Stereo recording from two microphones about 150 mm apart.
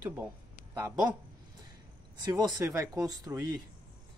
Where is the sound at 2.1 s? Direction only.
25° right (ahead or behind).